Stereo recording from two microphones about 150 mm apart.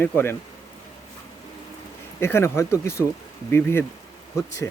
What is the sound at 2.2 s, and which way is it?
Speech, 15° left (ahead or behind).